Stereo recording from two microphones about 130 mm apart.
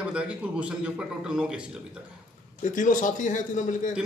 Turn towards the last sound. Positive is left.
turn(degrees=75)  # may be behind; listen again after turning